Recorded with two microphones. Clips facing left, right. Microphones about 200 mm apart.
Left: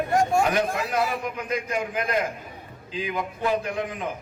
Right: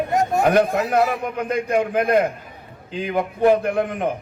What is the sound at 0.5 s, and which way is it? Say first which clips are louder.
A man's voice: right 7 dB; 55° right (ahead or behind).